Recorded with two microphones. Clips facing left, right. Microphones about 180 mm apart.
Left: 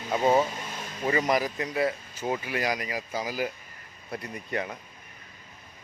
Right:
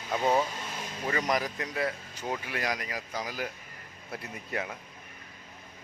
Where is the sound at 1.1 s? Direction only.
5° left (ahead or behind).